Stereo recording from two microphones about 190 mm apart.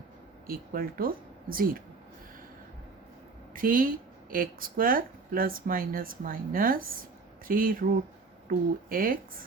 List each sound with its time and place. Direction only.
0.4 s speech: 50° right (ahead or behind)
3.5 s speech: 45° right (ahead or behind)